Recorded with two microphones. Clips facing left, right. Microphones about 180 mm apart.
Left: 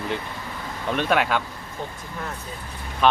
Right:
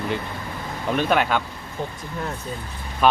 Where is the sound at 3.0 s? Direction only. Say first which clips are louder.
Right 1 dB; 5° right (ahead or behind).